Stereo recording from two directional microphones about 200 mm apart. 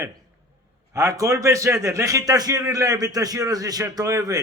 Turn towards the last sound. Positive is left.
turn(degrees=-15)  # may be behind; listen again after turning